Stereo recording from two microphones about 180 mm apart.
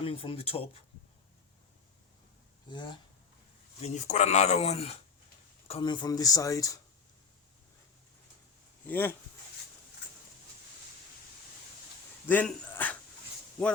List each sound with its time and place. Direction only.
0.0 s speech: 30° left (ahead or behind)
2.6 s speech: 25° left (ahead or behind)
3.8 s speech: 35° left (ahead or behind); by 6.7 s 20° left (ahead or behind)
8.9 s speech: 10° left (ahead or behind)
12.3 s speech: 10° left (ahead or behind)